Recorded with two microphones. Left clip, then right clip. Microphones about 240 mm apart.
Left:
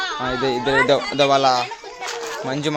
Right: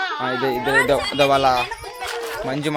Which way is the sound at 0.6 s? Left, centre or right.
Centre.